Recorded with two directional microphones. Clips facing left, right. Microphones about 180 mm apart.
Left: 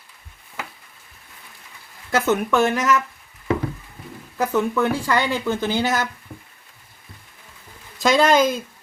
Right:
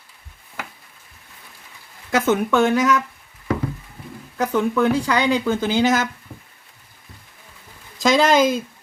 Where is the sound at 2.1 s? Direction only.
Centre (ahead or behind).